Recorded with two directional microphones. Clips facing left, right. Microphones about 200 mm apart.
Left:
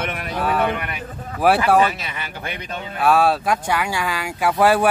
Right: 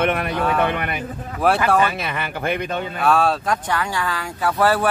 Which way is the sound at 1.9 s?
55° right (ahead or behind).